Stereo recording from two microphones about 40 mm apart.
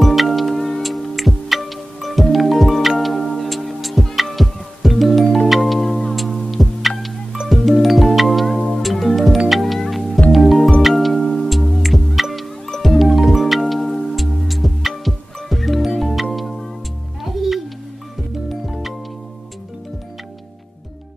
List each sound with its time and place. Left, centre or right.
0.0 s music: centre
8.5 s music: centre
8.8 s music: centre
18.7 s music: centre